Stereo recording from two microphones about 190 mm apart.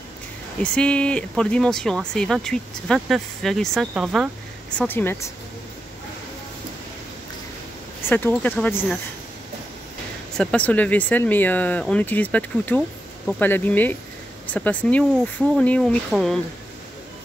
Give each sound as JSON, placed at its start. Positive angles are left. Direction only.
{"t": 0.6, "sound": "speech", "side_deg": 5}
{"t": 4.7, "sound": "speech", "side_deg": 10}
{"t": 8.0, "sound": "speech", "side_deg": 10}
{"t": 10.3, "sound": "speech", "side_deg": 5}